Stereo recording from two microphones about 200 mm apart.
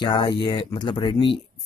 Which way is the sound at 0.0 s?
20° left (ahead or behind).